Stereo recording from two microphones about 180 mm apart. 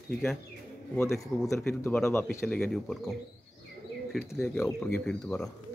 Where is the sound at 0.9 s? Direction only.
15° left (ahead or behind).